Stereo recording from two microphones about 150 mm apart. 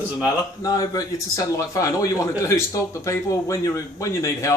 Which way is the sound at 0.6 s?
25° left (ahead or behind).